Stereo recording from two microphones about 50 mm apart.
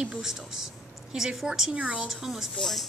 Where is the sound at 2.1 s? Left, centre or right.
Centre.